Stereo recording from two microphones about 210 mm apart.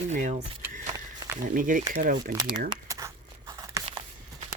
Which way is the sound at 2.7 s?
15° right (ahead or behind).